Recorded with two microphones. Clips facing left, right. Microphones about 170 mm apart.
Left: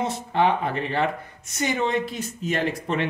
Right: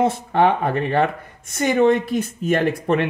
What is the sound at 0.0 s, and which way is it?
Speech, 50° right (ahead or behind).